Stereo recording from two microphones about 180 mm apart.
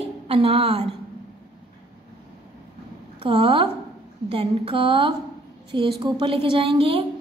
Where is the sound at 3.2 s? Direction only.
30° right (ahead or behind).